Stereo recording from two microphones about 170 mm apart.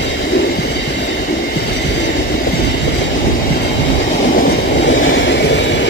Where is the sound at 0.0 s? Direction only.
90° left.